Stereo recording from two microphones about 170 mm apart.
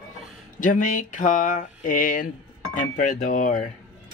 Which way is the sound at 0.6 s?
50° left (ahead or behind).